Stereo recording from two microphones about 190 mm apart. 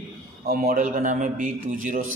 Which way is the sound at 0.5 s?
50° right (ahead or behind).